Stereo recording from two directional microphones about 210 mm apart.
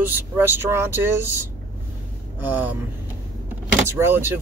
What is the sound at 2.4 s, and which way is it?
Speech, 10° right (ahead or behind).